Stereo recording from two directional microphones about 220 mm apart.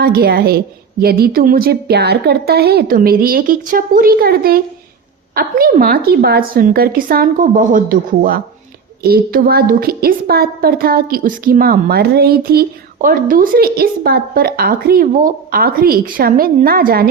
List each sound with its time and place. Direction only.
0.0 s a woman's voice: 45° right (ahead or behind)